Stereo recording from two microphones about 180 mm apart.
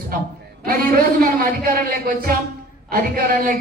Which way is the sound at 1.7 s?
55° right (ahead or behind).